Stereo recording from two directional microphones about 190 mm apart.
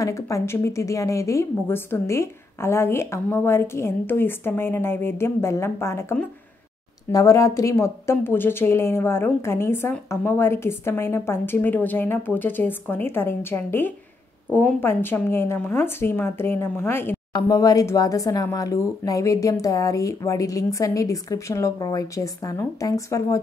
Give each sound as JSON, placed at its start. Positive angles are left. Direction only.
{"t": 0.0, "sound": "speech", "side_deg": 15}